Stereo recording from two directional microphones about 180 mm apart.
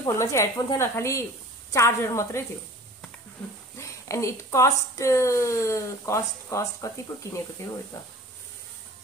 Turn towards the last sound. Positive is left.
turn(degrees=15)  # may be behind; listen again after turning